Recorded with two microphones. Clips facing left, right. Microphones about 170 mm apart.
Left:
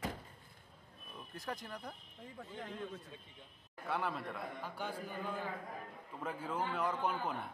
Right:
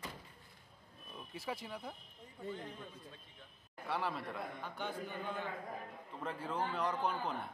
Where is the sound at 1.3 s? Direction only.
5° right (ahead or behind).